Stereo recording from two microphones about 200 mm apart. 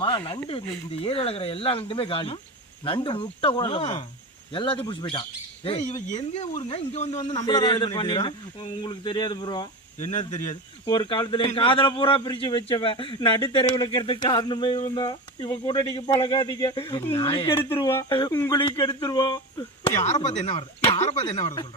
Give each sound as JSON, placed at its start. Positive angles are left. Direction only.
{"t": 0.0, "sound": "speech", "side_deg": 25}
{"t": 7.2, "sound": "speech", "side_deg": 20}
{"t": 10.0, "sound": "speech", "side_deg": 35}
{"t": 10.5, "sound": "speech", "side_deg": 20}